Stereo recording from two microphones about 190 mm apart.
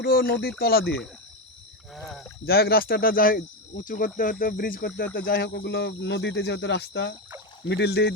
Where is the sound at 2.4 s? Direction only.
55° left (ahead or behind).